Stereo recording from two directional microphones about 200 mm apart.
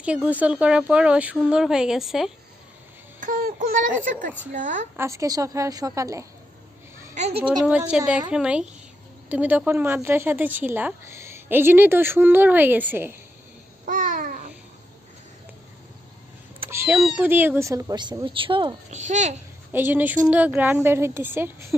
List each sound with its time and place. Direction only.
0.3 s speech: 5° right (ahead or behind)
3.2 s speech: 40° right (ahead or behind)
4.9 s a woman's voice: 15° right (ahead or behind)
7.2 s speech: 30° right (ahead or behind)
7.6 s a woman's voice: 5° right (ahead or behind)
13.8 s babbling: 40° right (ahead or behind)
16.6 s a woman's voice: 10° right (ahead or behind); by 19.4 s 35° right (ahead or behind)
19.7 s a woman's voice: 10° right (ahead or behind)